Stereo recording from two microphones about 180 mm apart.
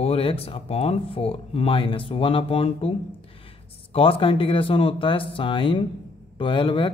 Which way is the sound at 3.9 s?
30° left (ahead or behind).